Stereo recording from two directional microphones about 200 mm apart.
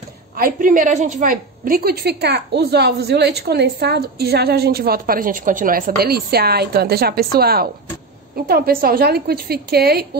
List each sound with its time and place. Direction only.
0.4 s a woman's voice: 45° right (ahead or behind)